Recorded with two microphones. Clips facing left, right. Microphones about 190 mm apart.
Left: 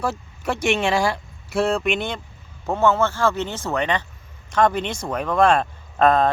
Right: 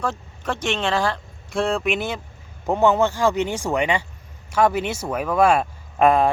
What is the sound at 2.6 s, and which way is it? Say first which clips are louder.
Speech: right 1 dB; 15° right (ahead or behind).